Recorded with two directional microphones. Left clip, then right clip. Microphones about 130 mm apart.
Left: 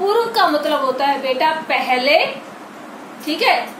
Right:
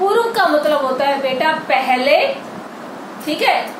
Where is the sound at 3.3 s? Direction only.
20° left (ahead or behind).